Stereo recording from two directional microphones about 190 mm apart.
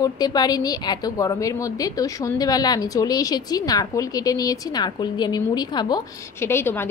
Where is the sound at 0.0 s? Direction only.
20° left (ahead or behind).